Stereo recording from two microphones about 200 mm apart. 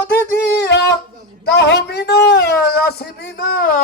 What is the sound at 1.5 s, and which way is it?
A man's voice, 55° left (ahead or behind).